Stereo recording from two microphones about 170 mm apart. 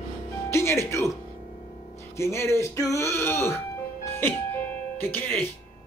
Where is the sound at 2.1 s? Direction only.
15° left (ahead or behind).